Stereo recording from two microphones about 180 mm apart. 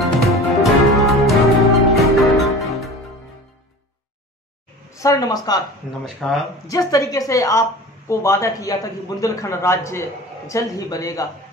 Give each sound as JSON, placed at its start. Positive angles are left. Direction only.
{"t": 0.0, "sound": "music", "side_deg": 0}
{"t": 4.9, "sound": "speech", "side_deg": 20}
{"t": 6.0, "sound": "speech", "side_deg": 0}
{"t": 6.7, "sound": "a woman's voice", "side_deg": 20}